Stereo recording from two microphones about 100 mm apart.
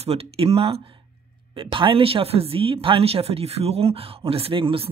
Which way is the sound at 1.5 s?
55° right (ahead or behind).